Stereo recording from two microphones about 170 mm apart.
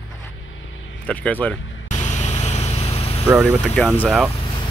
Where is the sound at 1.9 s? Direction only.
45° left (ahead or behind).